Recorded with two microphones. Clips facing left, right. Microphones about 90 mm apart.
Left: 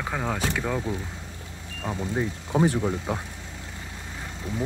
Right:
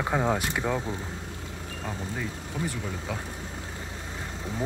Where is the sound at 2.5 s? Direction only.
65° left (ahead or behind).